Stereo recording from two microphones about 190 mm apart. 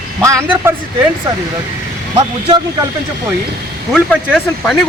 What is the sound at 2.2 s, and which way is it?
Speech, 25° right (ahead or behind).